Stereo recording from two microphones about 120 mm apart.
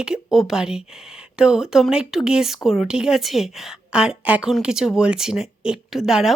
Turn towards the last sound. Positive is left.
turn(degrees=-5)  # may be behind; listen again after turning